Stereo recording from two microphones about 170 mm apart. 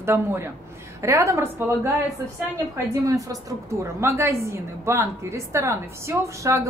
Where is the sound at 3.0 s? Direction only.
20° right (ahead or behind).